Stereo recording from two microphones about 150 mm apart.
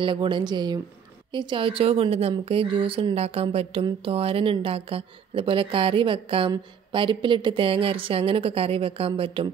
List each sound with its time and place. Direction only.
0.0 s a woman's voice: 35° right (ahead or behind)